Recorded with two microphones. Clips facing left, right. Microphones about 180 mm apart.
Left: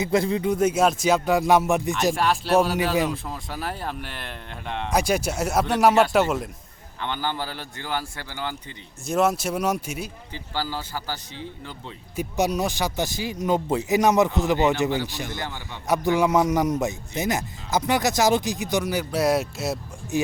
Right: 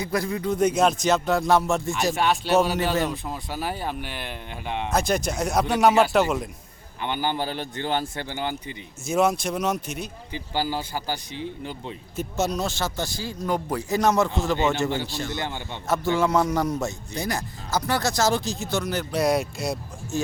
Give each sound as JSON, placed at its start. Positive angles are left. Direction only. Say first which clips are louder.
{"t": 0.0, "sound": "a man's voice", "louder": "left 4 dB", "side_deg": 25}
{"t": 0.6, "sound": "a man's voice", "louder": "right 1 dB", "side_deg": 5}
{"t": 2.1, "sound": "speech", "louder": "right 1 dB", "side_deg": 0}
{"t": 4.9, "sound": "a man's voice", "louder": "left 1 dB", "side_deg": 10}
{"t": 7.0, "sound": "a man's voice", "louder": "right 2 dB", "side_deg": -15}
{"t": 9.0, "sound": "a man's voice", "louder": "even", "side_deg": 0}
{"t": 10.3, "sound": "speech", "louder": "right 3 dB", "side_deg": -15}
{"t": 12.1, "sound": "a man's voice", "louder": "left 2 dB", "side_deg": 10}
{"t": 15.4, "sound": "a man's voice", "louder": "right 2 dB", "side_deg": -20}
{"t": 15.9, "sound": "a man's voice", "louder": "left 2 dB", "side_deg": 15}